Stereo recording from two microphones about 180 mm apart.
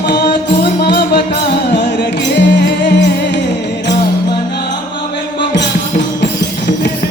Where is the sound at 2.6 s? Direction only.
70° left (ahead or behind).